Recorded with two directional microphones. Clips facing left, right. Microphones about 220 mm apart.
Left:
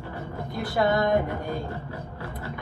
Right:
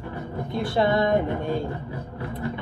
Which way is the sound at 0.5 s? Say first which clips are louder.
Right 2 dB; 25° right (ahead or behind).